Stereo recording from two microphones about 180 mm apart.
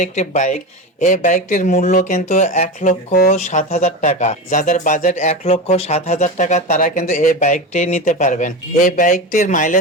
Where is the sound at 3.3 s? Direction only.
40° left (ahead or behind).